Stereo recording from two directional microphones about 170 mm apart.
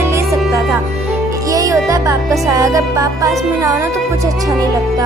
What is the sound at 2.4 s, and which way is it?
Speech, 20° right (ahead or behind).